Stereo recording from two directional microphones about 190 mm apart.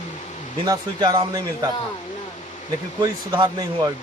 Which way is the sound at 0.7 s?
20° right (ahead or behind).